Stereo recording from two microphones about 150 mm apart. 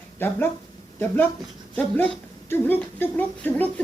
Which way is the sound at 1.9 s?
10° left (ahead or behind).